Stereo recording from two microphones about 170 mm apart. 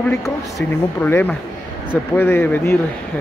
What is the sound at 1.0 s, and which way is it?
Speech, 10° left (ahead or behind).